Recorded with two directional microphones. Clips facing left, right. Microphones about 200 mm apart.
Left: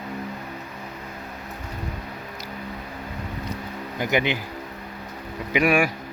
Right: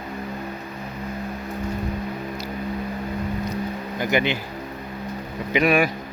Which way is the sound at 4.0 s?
15° left (ahead or behind).